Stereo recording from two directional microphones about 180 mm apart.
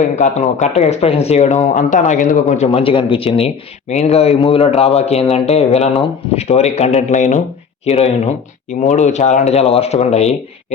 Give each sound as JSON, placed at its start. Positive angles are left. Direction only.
{"t": 0.0, "sound": "speech", "side_deg": 40}